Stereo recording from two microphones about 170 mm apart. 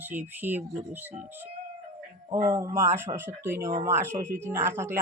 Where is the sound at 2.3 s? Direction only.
20° right (ahead or behind).